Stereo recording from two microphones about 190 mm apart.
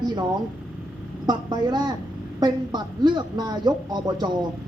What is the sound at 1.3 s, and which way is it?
A woman's voice, 20° right (ahead or behind).